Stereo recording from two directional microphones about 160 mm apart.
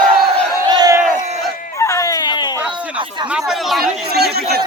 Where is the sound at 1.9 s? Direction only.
20° left (ahead or behind).